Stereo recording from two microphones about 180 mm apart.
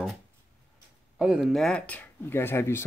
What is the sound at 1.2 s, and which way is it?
Speech, 5° right (ahead or behind).